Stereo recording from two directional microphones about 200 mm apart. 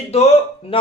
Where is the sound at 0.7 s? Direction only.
25° left (ahead or behind).